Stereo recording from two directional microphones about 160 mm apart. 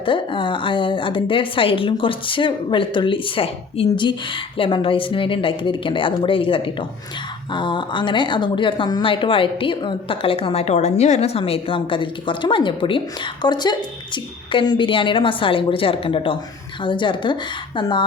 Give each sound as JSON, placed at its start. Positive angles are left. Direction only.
{"t": 0.0, "sound": "speech", "side_deg": 30}